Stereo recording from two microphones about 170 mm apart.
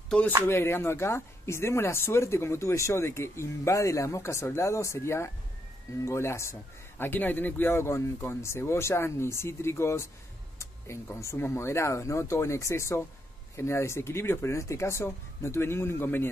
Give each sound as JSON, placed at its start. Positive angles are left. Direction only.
{"t": 0.5, "sound": "speech", "side_deg": 15}